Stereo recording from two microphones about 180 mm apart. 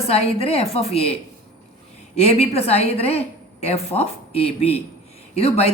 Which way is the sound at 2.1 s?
35° left (ahead or behind).